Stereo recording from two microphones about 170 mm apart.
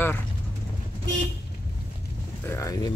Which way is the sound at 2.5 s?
20° left (ahead or behind).